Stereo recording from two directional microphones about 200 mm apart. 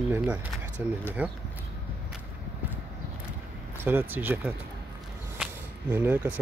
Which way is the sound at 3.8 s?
10° right (ahead or behind).